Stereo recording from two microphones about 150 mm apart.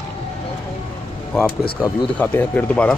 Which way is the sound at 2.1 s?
10° left (ahead or behind).